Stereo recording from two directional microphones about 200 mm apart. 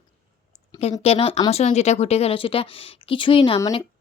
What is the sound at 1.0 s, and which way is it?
Speech, 30° left (ahead or behind).